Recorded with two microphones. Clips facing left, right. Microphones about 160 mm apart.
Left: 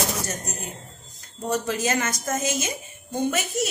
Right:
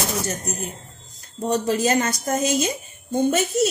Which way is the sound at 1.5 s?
35° right (ahead or behind).